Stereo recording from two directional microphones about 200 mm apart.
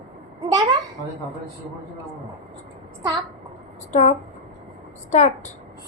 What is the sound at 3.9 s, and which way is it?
A woman's voice, 35° left (ahead or behind).